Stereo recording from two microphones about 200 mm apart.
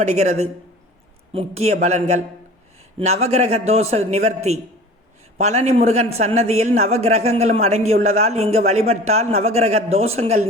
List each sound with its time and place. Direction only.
0.0 s a man's voice: 35° right (ahead or behind)
5.4 s a man's voice: 35° right (ahead or behind)